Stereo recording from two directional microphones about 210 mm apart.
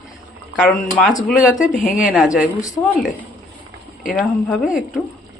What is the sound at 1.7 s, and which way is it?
Speech, 40° left (ahead or behind).